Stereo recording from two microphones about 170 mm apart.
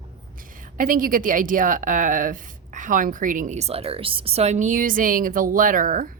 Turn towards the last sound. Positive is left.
turn(degrees=-55)  # may be behind; listen again after turning